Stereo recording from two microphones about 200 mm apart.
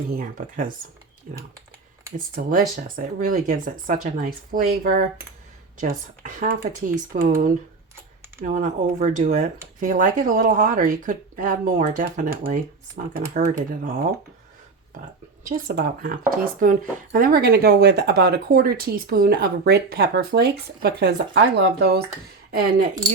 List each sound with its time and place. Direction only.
0.2 s speech: 40° right (ahead or behind)
15.4 s speech: 45° right (ahead or behind)
22.5 s speech: 45° right (ahead or behind)